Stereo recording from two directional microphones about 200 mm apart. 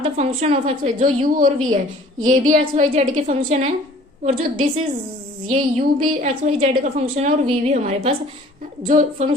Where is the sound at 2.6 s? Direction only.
35° right (ahead or behind).